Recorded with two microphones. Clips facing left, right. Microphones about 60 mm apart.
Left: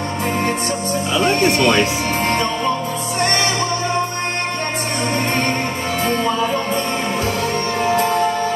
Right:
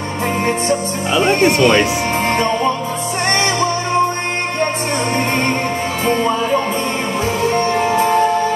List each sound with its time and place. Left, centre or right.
0.5 s music: right
7.4 s music: right